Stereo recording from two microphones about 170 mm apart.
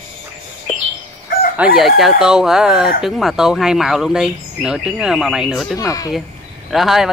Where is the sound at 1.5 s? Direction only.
Centre (ahead or behind).